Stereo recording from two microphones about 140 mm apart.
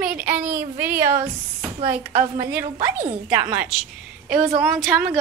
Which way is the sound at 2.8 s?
10° right (ahead or behind).